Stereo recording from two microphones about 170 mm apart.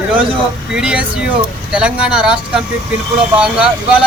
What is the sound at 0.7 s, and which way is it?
Speech, 5° right (ahead or behind).